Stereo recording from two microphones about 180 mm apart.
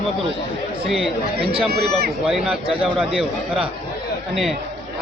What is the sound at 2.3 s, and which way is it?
A man's voice, 5° right (ahead or behind).